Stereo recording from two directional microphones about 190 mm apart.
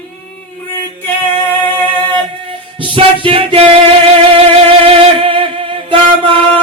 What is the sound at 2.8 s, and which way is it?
Music, 30° right (ahead or behind).